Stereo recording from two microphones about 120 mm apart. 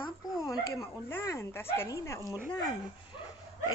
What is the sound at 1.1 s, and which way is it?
Speech, 20° left (ahead or behind).